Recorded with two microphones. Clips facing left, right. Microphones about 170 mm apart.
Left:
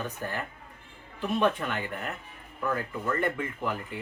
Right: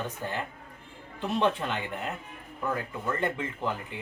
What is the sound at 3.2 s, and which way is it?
Speech, 20° right (ahead or behind).